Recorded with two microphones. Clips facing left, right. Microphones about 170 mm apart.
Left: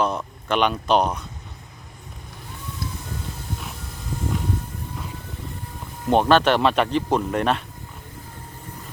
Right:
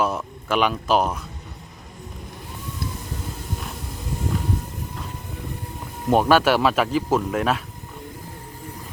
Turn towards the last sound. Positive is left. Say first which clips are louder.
# even
turn(degrees=-5)  # may be behind; listen again after turning